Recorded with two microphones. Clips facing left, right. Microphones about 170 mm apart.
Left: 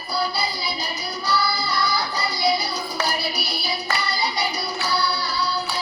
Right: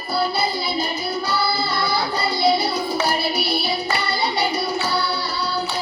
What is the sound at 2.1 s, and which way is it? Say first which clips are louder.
Music: right 5 dB; 25° right (ahead or behind).